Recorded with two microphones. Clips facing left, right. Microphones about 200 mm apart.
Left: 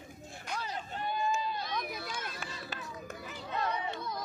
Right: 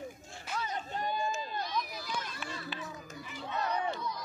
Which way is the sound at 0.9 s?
45° right (ahead or behind).